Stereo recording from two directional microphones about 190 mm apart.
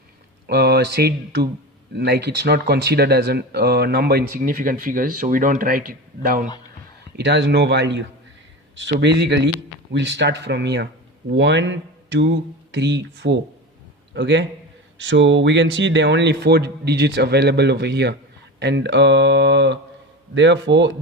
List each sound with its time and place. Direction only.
0.4 s speech: 60° right (ahead or behind)
7.2 s speech: 65° right (ahead or behind)